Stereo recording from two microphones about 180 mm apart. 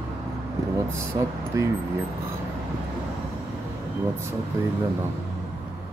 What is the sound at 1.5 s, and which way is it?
Speech, 20° right (ahead or behind).